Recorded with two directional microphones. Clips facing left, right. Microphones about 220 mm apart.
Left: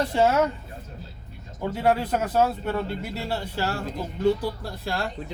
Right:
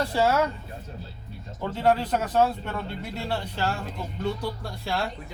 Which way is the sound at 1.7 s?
10° left (ahead or behind).